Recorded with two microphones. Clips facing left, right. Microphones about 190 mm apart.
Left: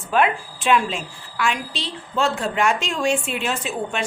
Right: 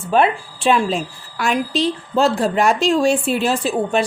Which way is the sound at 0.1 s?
30° right (ahead or behind).